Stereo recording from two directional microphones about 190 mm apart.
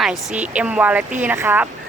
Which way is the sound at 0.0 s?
Centre (ahead or behind).